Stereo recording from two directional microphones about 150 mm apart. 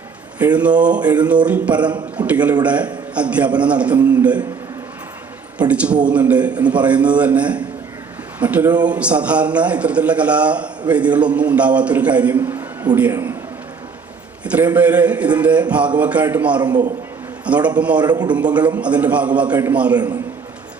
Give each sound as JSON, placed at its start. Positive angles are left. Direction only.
{"t": 0.3, "sound": "a man's voice", "side_deg": -10}
{"t": 5.5, "sound": "a man's voice", "side_deg": -10}
{"t": 14.4, "sound": "a man's voice", "side_deg": -10}
{"t": 16.6, "sound": "a man's voice", "side_deg": -30}
{"t": 17.4, "sound": "a man's voice", "side_deg": -10}
{"t": 18.0, "sound": "a man's voice", "side_deg": -30}
{"t": 18.3, "sound": "a man's voice", "side_deg": -10}